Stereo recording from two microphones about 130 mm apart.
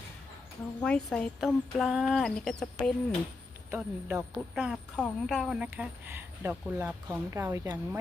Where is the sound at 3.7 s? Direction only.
15° right (ahead or behind).